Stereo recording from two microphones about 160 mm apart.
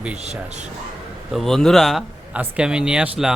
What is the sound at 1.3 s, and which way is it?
Speech, centre (ahead or behind).